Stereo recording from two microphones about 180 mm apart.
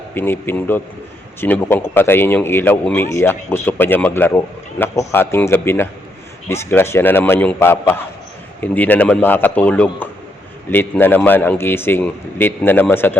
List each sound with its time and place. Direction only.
0.1 s speech: 10° left (ahead or behind)